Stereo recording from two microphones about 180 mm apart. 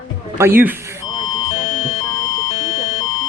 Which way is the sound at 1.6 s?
45° left (ahead or behind).